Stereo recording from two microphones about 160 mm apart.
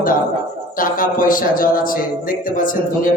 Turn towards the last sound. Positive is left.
turn(degrees=60)  # may be behind; listen again after turning